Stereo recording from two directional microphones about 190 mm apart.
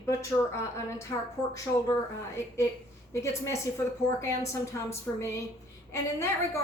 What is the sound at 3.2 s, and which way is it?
A woman's voice, 15° left (ahead or behind).